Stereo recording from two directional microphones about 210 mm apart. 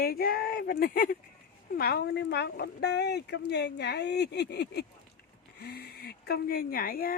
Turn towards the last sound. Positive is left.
turn(degrees=45)  # may be behind; listen again after turning